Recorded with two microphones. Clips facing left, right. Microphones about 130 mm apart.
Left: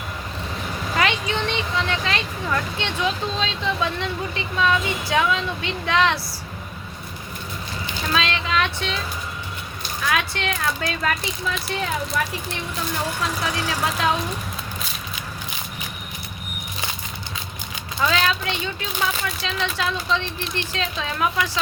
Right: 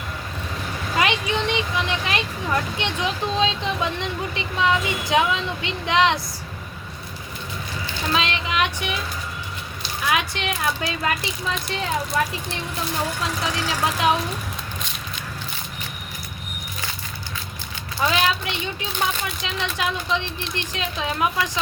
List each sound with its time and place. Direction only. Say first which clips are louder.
0.9 s speech: right 1 dB; 15° right (ahead or behind)
8.1 s a sound: left 1 dB; 20° right (ahead or behind)
10.1 s speech: even; 15° right (ahead or behind)
13.4 s speech: right 2 dB; 20° right (ahead or behind)
18.1 s speech: right 1 dB; 15° right (ahead or behind)